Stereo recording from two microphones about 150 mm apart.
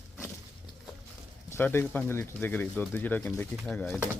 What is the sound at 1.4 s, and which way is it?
Speech, 15° left (ahead or behind).